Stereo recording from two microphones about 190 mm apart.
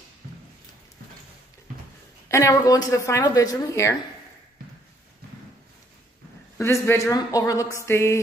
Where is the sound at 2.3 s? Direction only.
15° left (ahead or behind).